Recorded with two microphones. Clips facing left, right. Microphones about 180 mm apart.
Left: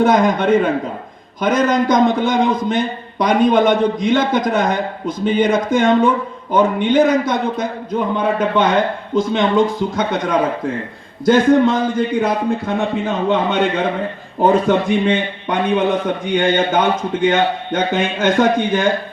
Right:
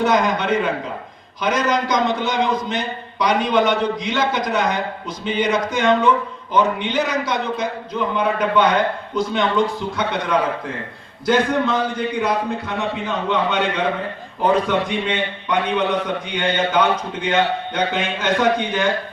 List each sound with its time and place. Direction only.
0.0 s a man's voice: 50° left (ahead or behind)